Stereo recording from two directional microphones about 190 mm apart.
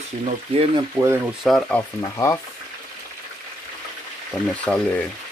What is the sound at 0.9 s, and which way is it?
Speech, 10° right (ahead or behind).